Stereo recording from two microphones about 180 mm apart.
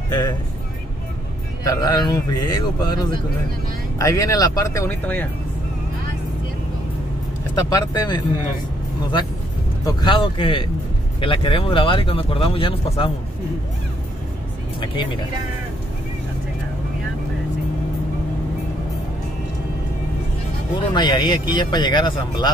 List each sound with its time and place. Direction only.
0.1 s speech: 20° left (ahead or behind)
1.6 s speech: 20° left (ahead or behind)
7.7 s speech: 20° left (ahead or behind)
9.8 s speech: 25° left (ahead or behind)
14.8 s speech: 25° left (ahead or behind)
20.9 s speech: 25° left (ahead or behind)